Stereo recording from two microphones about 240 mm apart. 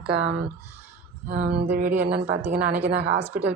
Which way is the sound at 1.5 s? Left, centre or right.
Right.